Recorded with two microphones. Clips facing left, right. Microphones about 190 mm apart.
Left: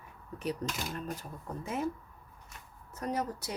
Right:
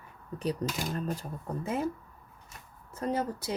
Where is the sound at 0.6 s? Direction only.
35° right (ahead or behind).